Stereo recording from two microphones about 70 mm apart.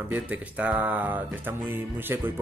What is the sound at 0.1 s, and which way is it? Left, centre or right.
Speech, right.